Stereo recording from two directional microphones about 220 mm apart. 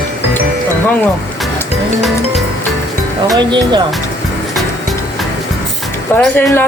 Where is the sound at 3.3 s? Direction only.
20° right (ahead or behind).